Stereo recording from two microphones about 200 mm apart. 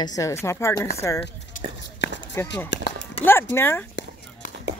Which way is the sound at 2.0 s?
55° left (ahead or behind).